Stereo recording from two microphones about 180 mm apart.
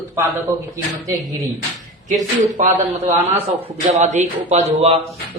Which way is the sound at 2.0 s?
40° right (ahead or behind).